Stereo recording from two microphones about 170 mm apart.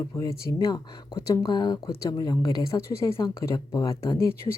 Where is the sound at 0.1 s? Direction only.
20° left (ahead or behind).